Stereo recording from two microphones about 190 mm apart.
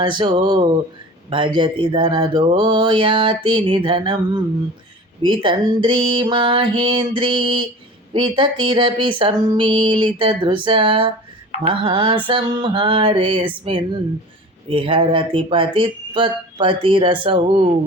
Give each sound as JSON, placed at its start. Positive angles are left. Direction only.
{"t": 0.0, "sound": "mantra", "side_deg": -25}
{"t": 14.7, "sound": "mantra", "side_deg": -30}